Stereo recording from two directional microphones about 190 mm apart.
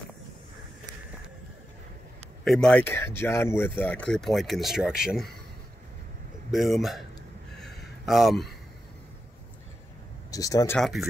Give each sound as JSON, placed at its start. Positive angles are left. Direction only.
{"t": 2.4, "sound": "speech", "side_deg": 0}
{"t": 6.5, "sound": "speech", "side_deg": 0}
{"t": 7.5, "sound": "a sound", "side_deg": 0}
{"t": 10.3, "sound": "speech", "side_deg": 20}
{"t": 10.8, "sound": "speech", "side_deg": 0}